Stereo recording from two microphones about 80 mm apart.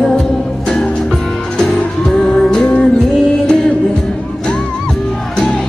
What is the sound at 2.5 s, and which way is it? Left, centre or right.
Music, centre.